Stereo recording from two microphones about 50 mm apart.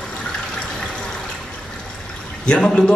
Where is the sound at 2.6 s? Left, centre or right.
Centre.